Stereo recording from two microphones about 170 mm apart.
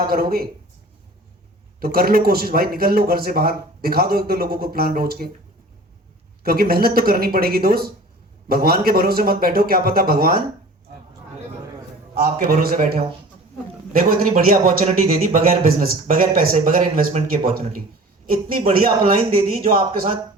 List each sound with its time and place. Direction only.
0.0 s speech: 60° right (ahead or behind)
1.8 s speech: 60° right (ahead or behind)
6.4 s speech: 60° right (ahead or behind)
12.1 s speech: 60° right (ahead or behind)
14.3 s speech: 50° right (ahead or behind)